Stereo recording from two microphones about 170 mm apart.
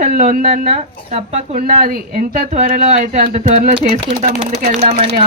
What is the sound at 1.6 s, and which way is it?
A woman's voice, 55° right (ahead or behind).